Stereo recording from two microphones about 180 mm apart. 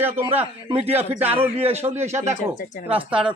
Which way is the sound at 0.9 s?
35° right (ahead or behind).